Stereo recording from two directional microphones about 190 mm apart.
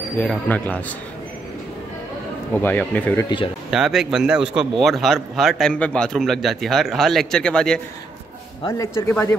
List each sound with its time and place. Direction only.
0.2 s speech: 10° left (ahead or behind)
2.6 s speech: 10° left (ahead or behind)
8.6 s speech: 15° left (ahead or behind)